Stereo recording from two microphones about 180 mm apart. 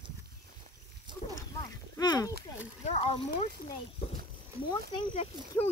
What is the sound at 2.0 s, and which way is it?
Speech, 20° left (ahead or behind).